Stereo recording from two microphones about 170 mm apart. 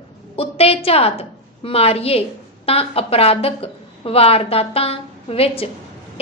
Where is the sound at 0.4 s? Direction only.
35° left (ahead or behind).